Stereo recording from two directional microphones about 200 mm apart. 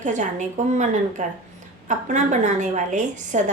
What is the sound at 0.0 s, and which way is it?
A woman's voice, 35° right (ahead or behind).